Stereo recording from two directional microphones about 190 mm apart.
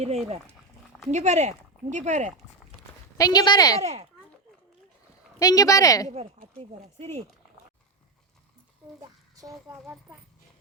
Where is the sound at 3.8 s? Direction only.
35° right (ahead or behind).